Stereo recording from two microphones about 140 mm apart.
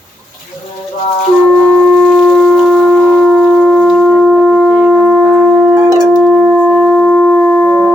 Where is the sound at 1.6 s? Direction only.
5° left (ahead or behind); by 5.8 s 10° right (ahead or behind).